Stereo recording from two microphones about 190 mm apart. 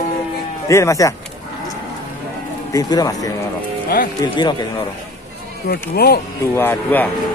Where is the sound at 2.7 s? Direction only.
20° left (ahead or behind).